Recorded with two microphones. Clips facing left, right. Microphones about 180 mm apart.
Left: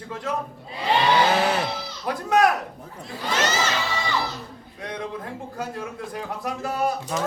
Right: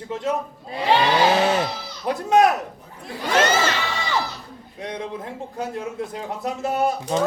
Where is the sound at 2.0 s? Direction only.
25° right (ahead or behind).